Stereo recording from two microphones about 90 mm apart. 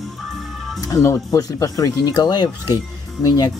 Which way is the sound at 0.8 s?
40° left (ahead or behind).